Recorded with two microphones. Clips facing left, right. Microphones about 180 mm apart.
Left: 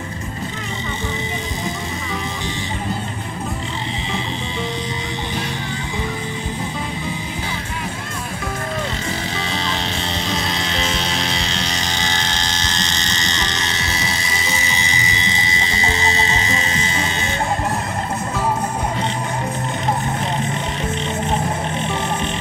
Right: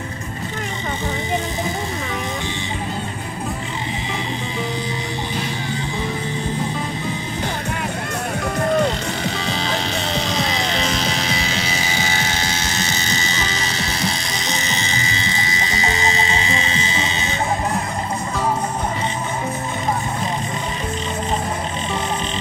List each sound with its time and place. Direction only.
8.8 s music: centre (ahead or behind)
16.0 s music: 30° right (ahead or behind)